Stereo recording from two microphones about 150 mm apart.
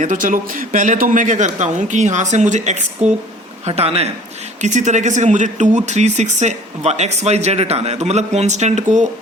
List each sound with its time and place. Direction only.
0.0 s speech: 60° right (ahead or behind)
3.7 s speech: 40° right (ahead or behind)
4.6 s speech: 55° right (ahead or behind)